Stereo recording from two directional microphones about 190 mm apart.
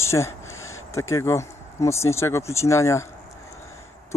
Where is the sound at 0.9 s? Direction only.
15° left (ahead or behind).